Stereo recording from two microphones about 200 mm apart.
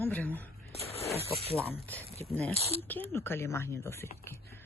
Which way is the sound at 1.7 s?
10° left (ahead or behind).